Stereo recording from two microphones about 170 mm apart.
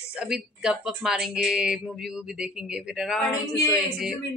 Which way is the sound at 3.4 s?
20° left (ahead or behind).